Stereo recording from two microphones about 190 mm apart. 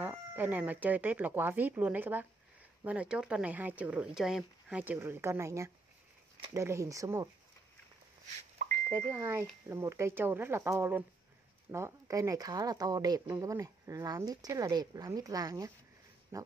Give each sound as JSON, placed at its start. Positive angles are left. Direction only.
{"t": 0.0, "sound": "speech", "side_deg": -10}
{"t": 8.6, "sound": "a sound", "side_deg": -45}
{"t": 9.1, "sound": "speech", "side_deg": -10}